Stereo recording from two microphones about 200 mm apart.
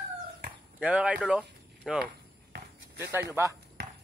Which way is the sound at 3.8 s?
55° right (ahead or behind).